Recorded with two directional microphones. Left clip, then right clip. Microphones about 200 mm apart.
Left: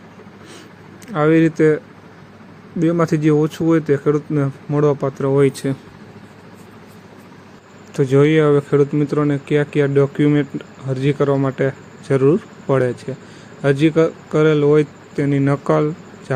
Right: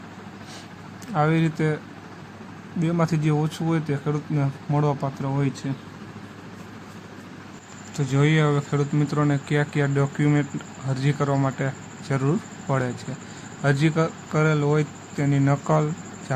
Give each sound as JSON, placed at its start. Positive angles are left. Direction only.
{"t": 1.0, "sound": "speech", "side_deg": 15}
{"t": 7.9, "sound": "speech", "side_deg": 15}